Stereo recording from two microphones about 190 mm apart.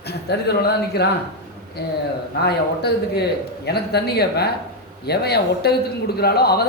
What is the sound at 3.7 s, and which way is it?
A man's voice, 60° left (ahead or behind).